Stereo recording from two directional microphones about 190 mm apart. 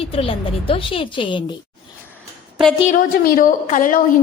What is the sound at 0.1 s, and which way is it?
A woman's voice, 30° left (ahead or behind).